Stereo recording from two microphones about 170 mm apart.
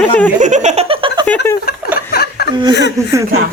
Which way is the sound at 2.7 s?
90° left.